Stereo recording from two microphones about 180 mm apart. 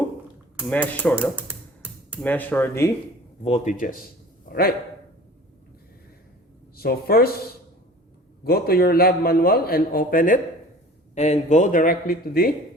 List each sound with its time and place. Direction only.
0.7 s speech: 10° left (ahead or behind)
1.1 s music: 10° right (ahead or behind)
2.2 s speech: 10° left (ahead or behind)
3.4 s speech: 40° left (ahead or behind)
4.5 s a sound: 50° left (ahead or behind)
6.7 s a man's voice: 60° left (ahead or behind)
8.4 s a man's voice: 60° left (ahead or behind)